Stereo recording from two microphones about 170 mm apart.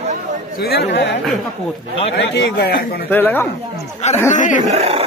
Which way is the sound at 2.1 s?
90° left.